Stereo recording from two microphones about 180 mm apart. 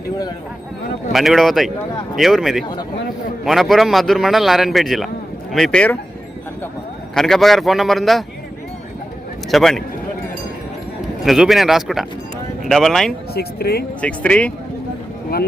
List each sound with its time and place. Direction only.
1.1 s a man's voice: centre (ahead or behind)
7.1 s a man's voice: centre (ahead or behind)
9.5 s a man's voice: centre (ahead or behind)
11.3 s a man's voice: centre (ahead or behind)
13.3 s speech: 60° left (ahead or behind)
14.0 s speech: 5° left (ahead or behind)